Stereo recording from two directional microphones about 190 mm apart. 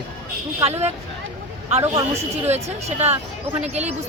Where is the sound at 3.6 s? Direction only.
35° right (ahead or behind).